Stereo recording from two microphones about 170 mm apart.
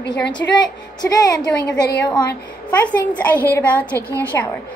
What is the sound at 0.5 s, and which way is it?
Speech, 25° left (ahead or behind).